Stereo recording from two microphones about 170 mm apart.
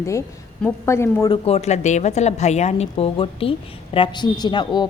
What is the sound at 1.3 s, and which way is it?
A woman's voice, 35° left (ahead or behind).